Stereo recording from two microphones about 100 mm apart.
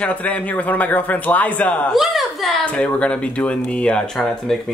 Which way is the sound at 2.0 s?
Centre (ahead or behind).